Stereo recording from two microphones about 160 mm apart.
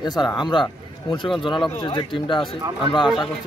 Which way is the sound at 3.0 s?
Centre (ahead or behind).